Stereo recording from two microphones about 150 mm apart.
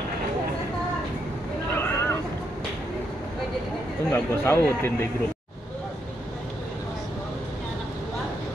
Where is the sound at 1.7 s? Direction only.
15° left (ahead or behind).